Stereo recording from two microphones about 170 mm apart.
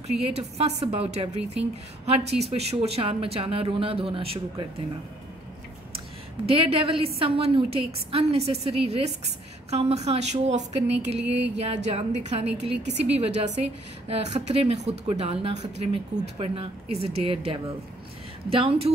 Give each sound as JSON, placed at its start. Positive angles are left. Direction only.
{"t": 0.2, "sound": "a woman's voice", "side_deg": -40}
{"t": 6.5, "sound": "a woman's voice", "side_deg": -35}